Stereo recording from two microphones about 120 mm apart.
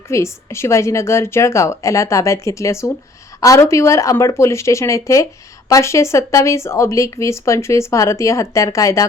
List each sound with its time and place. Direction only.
0.1 s speech: 25° left (ahead or behind)